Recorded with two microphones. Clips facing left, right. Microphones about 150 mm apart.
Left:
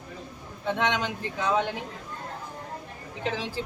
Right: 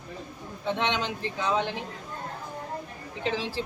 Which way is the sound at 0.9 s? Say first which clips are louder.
Left 1 dB; 25° right (ahead or behind).